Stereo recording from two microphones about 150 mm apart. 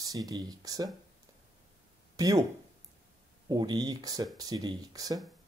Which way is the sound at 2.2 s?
25° right (ahead or behind).